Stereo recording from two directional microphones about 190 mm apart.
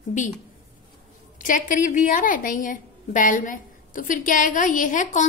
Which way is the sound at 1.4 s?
45° left (ahead or behind).